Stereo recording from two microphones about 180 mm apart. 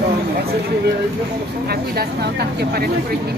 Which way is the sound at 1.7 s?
65° right (ahead or behind).